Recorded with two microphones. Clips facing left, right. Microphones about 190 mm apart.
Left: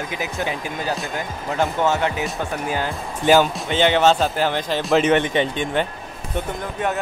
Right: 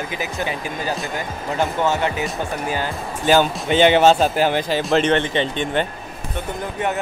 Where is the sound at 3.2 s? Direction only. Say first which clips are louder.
Left 1 dB; 10° left (ahead or behind).